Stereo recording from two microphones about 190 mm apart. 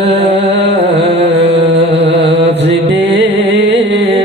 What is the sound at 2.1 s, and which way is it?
Music, 70° right (ahead or behind).